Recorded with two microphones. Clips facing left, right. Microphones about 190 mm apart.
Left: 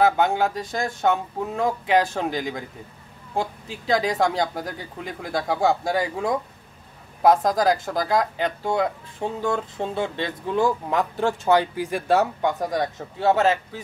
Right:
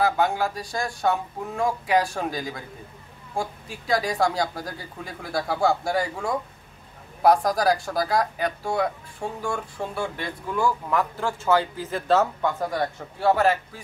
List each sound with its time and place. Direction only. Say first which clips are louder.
0.0 s speech: left 3 dB; 20° left (ahead or behind)